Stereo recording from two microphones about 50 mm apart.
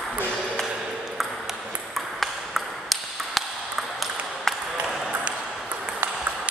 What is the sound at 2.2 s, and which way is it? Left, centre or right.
Ping, centre.